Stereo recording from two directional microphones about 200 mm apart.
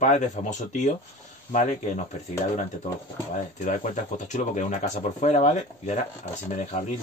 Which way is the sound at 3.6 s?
40° left (ahead or behind).